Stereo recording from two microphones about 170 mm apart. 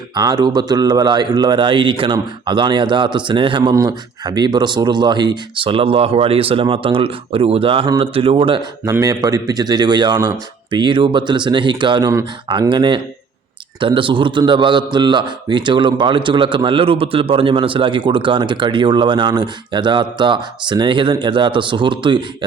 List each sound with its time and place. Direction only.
0.1 s a man's voice: 25° right (ahead or behind)